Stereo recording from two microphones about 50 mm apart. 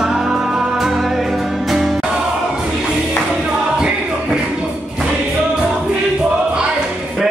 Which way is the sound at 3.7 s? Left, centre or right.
Centre.